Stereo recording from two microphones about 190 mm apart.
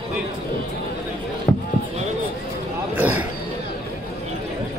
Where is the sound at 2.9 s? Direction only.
10° right (ahead or behind).